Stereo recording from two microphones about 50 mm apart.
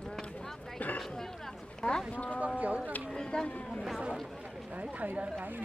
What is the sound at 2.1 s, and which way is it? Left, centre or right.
Speech, left.